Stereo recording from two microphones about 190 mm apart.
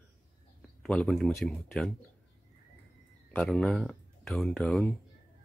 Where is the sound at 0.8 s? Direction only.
5° left (ahead or behind).